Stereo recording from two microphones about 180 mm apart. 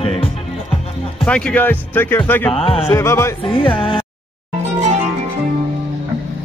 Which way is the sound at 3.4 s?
30° left (ahead or behind).